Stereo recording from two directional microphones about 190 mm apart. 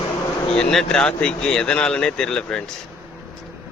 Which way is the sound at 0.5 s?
5° left (ahead or behind).